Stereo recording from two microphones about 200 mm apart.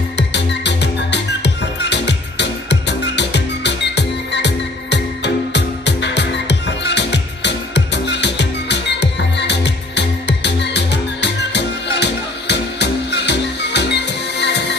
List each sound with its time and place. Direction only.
0.3 s music: 60° left (ahead or behind)